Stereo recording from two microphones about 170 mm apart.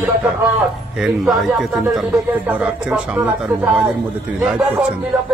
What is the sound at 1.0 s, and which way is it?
Speech, centre (ahead or behind).